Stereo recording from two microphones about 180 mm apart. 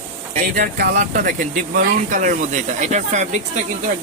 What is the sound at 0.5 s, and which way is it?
Speech, 55° right (ahead or behind).